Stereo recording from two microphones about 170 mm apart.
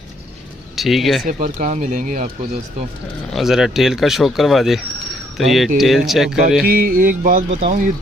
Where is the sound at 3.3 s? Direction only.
Centre (ahead or behind).